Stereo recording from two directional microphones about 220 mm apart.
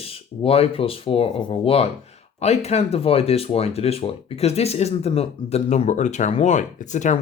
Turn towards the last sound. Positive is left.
turn(degrees=35)  # may be behind; listen again after turning